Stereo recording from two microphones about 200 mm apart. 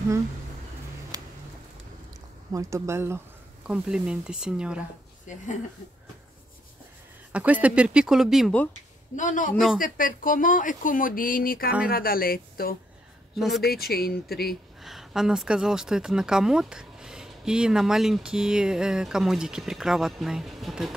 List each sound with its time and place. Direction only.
1.1 s a sound: 20° right (ahead or behind)
2.5 s speech: 15° right (ahead or behind)
7.3 s speech: 5° right (ahead or behind)
9.1 s speech: 40° left (ahead or behind)
13.4 s speech: centre (ahead or behind)
13.7 s speech: 50° left (ahead or behind)
14.8 s speech: centre (ahead or behind)